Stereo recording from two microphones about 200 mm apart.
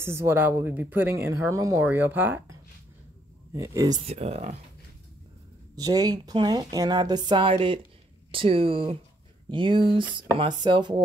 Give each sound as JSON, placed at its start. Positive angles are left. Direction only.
{"t": 0.0, "sound": "speech", "side_deg": -15}
{"t": 3.5, "sound": "speech", "side_deg": -15}
{"t": 4.1, "sound": "speech", "side_deg": -30}
{"t": 5.8, "sound": "a woman's voice", "side_deg": -20}